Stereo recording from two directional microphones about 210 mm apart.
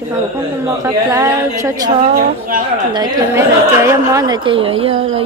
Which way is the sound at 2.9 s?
15° right (ahead or behind).